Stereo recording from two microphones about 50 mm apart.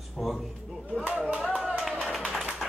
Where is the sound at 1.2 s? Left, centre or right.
Right.